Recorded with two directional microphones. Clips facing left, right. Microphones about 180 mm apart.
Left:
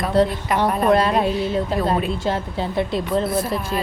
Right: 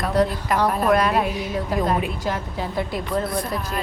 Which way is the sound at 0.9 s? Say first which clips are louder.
Left 2 dB; 30° left (ahead or behind).